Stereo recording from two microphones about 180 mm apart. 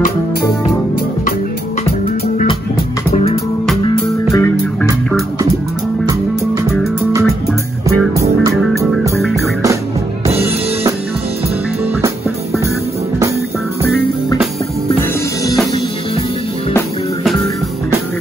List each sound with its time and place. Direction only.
3.8 s music: 20° left (ahead or behind)
8.2 s music: 15° right (ahead or behind)
10.4 s drum kit: 15° right (ahead or behind)